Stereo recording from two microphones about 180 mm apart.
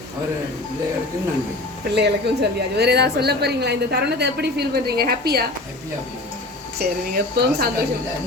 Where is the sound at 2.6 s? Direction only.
65° right (ahead or behind).